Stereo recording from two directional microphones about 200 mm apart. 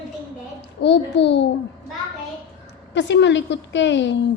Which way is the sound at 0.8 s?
60° left (ahead or behind).